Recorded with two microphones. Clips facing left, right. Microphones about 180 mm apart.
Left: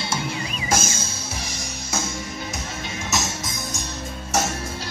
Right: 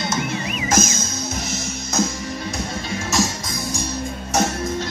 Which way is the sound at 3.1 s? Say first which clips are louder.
Right 6 dB; 20° left (ahead or behind).